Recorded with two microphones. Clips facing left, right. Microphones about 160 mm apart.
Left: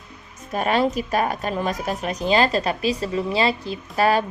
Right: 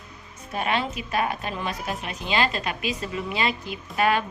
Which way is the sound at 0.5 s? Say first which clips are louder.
Left 6 dB; 40° left (ahead or behind).